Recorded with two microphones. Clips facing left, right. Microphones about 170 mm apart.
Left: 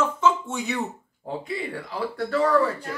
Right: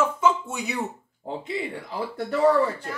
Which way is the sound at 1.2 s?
20° right (ahead or behind).